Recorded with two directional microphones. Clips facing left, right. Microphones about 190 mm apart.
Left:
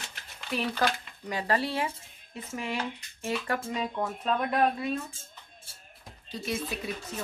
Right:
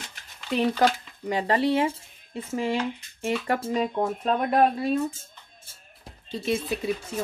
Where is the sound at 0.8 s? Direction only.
20° right (ahead or behind).